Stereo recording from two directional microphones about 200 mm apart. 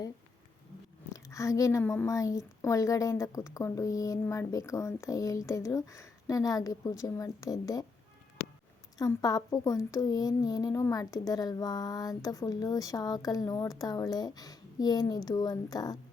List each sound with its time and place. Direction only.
1.1 s a woman's voice: 15° left (ahead or behind)
9.0 s a woman's voice: 20° left (ahead or behind)